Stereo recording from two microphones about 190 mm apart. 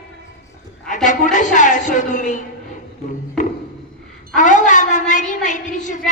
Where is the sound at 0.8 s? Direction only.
40° left (ahead or behind).